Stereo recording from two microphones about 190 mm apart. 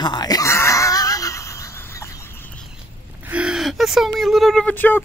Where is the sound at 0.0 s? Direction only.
20° left (ahead or behind).